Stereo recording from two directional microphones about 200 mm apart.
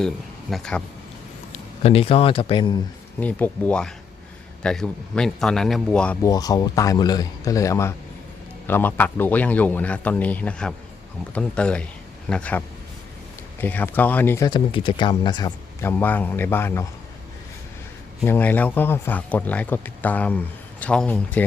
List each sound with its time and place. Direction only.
0.5 s a man's voice: 5° left (ahead or behind)
1.8 s speech: 30° left (ahead or behind)
3.2 s a man's voice: 10° left (ahead or behind)
6.2 s a man's voice: 20° left (ahead or behind)
18.2 s speech: 10° left (ahead or behind)